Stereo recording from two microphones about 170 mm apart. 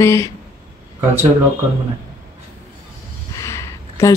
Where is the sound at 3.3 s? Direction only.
20° left (ahead or behind).